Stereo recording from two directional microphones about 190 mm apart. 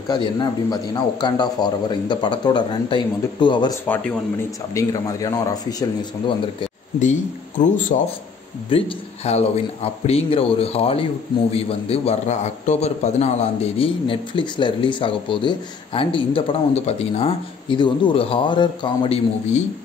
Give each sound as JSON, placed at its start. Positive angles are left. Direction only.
{"t": 0.1, "sound": "a man's voice", "side_deg": 20}
{"t": 3.9, "sound": "speech", "side_deg": 5}
{"t": 4.7, "sound": "a man's voice", "side_deg": 15}
{"t": 7.0, "sound": "a man's voice", "side_deg": 40}